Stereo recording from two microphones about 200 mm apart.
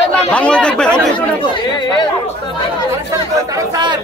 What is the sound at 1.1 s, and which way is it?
Speech, 25° left (ahead or behind).